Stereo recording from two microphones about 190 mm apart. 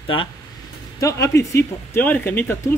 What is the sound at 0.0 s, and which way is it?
Speech, 25° left (ahead or behind).